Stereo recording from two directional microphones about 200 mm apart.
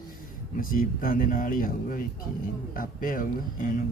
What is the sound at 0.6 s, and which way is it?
Speech, 45° left (ahead or behind).